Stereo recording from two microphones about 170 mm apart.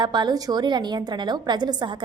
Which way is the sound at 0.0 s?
25° right (ahead or behind).